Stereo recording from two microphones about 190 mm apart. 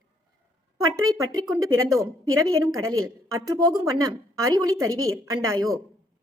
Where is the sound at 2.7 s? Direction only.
90° right.